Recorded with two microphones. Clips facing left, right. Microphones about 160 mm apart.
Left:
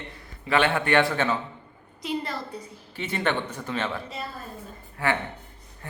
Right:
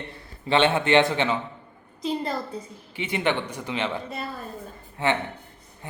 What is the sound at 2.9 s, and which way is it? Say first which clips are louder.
A man's voice: right 2 dB; 15° right (ahead or behind).